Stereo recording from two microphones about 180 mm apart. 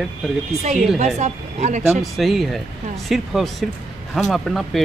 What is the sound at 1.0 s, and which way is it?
Speech, 40° right (ahead or behind).